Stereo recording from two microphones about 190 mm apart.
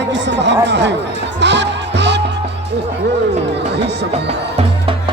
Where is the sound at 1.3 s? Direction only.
65° right (ahead or behind).